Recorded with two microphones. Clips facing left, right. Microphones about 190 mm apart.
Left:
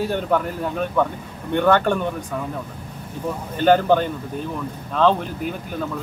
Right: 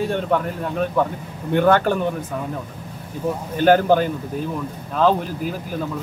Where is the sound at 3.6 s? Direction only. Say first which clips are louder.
Right 1 dB; 5° right (ahead or behind).